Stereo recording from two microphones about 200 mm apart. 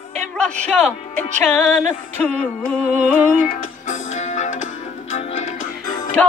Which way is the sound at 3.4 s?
35° left (ahead or behind).